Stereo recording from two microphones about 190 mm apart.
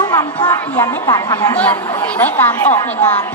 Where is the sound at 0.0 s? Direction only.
20° left (ahead or behind).